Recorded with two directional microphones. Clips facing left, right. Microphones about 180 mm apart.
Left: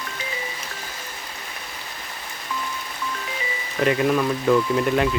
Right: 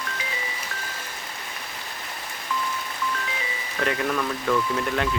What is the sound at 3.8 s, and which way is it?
Speech, 10° left (ahead or behind).